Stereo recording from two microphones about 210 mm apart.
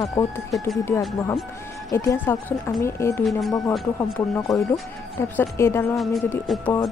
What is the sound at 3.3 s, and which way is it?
Speech, centre (ahead or behind).